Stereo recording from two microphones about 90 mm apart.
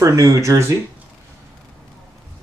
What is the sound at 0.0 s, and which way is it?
Speech, 35° right (ahead or behind).